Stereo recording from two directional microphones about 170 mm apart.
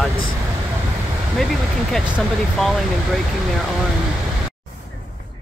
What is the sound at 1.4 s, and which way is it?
Speech, centre (ahead or behind).